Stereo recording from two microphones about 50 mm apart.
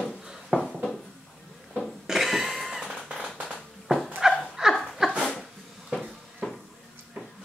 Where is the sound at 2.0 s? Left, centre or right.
Centre.